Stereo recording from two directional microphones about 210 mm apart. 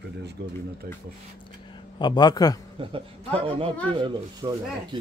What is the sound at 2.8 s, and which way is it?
Speech, 25° right (ahead or behind).